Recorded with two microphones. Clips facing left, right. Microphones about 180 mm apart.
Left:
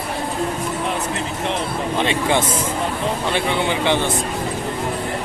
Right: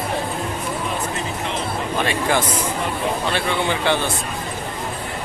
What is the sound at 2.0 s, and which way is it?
A man's voice, 20° left (ahead or behind).